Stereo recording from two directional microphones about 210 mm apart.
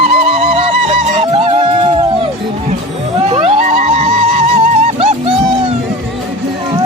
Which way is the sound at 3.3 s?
35° right (ahead or behind).